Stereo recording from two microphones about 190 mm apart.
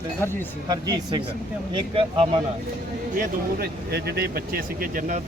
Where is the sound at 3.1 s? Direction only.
55° right (ahead or behind).